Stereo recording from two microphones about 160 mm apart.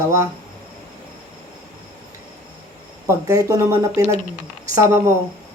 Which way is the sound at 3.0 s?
15° right (ahead or behind).